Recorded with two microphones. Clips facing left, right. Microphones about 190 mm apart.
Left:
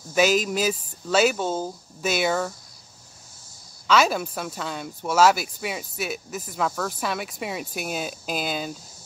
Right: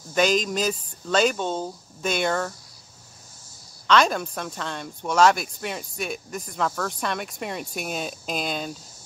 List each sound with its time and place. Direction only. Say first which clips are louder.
0.1 s speech: left 1 dB; 5° left (ahead or behind)
3.8 s speech: even; 5° left (ahead or behind)